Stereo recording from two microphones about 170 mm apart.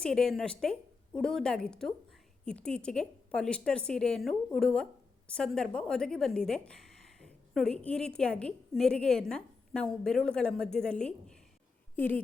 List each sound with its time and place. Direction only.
0.0 s a woman's voice: 5° left (ahead or behind)